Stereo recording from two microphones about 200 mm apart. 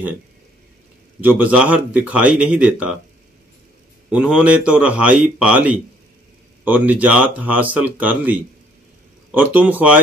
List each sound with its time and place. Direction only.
1.2 s speech: 10° right (ahead or behind)
4.1 s a man's voice: 5° right (ahead or behind)